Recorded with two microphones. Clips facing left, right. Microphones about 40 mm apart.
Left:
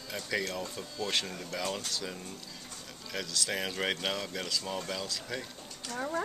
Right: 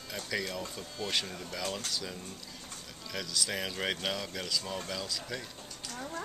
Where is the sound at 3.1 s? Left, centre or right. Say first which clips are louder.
Left 1 dB; centre.